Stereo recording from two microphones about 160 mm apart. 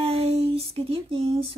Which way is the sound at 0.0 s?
40° right (ahead or behind).